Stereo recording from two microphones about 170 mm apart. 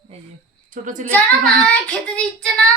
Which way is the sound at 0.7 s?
50° right (ahead or behind).